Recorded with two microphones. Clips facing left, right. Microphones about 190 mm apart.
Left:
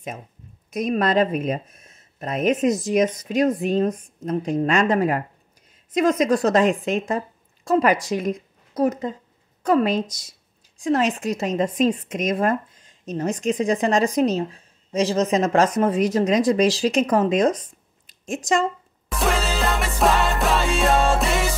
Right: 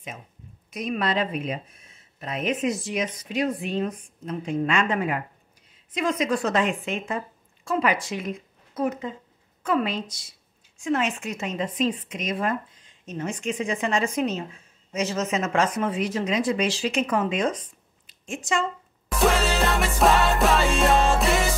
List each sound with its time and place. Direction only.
0.7 s a woman's voice: 45° left (ahead or behind)
19.0 s music: centre (ahead or behind)